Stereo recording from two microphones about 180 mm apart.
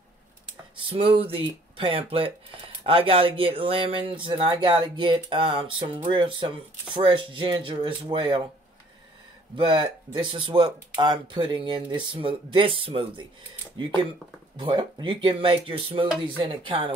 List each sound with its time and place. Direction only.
0.8 s speech: 30° right (ahead or behind)
9.6 s speech: 25° right (ahead or behind)